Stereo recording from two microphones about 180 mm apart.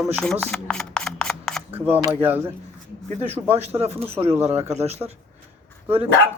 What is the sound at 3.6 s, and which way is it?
Speech, 35° right (ahead or behind).